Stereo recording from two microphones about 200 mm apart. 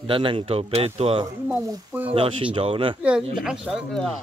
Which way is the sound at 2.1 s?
25° right (ahead or behind).